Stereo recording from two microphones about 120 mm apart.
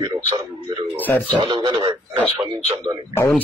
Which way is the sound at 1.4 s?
40° right (ahead or behind).